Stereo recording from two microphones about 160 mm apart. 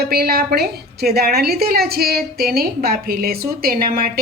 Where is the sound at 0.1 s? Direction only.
75° right (ahead or behind).